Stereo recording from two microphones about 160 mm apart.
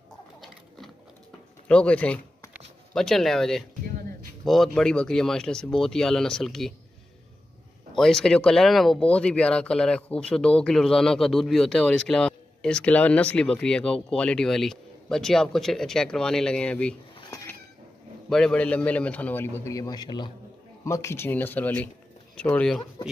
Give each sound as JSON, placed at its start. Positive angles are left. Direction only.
{"t": 0.4, "sound": "a sound", "side_deg": 0}
{"t": 1.7, "sound": "speech", "side_deg": 5}
{"t": 4.7, "sound": "speech", "side_deg": 5}
{"t": 7.9, "sound": "speech", "side_deg": 5}
{"t": 17.2, "sound": "cat", "side_deg": 25}
{"t": 18.3, "sound": "a man's voice", "side_deg": 5}
{"t": 20.8, "sound": "a man's voice", "side_deg": 20}